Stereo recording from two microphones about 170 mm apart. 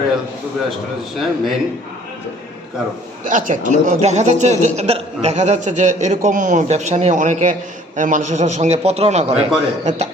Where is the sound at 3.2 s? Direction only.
50° right (ahead or behind).